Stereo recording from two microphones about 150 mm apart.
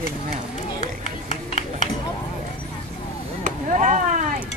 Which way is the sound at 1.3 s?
55° left (ahead or behind).